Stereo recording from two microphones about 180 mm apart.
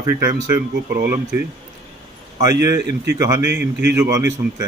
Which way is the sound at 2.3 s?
20° right (ahead or behind).